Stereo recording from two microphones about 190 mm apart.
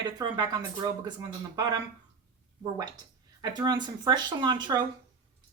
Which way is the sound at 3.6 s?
20° right (ahead or behind).